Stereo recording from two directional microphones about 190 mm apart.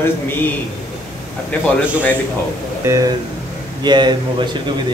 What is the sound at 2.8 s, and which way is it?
Speech, 15° right (ahead or behind).